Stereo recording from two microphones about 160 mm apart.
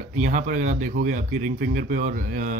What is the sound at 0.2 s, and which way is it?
A man's voice, 50° right (ahead or behind).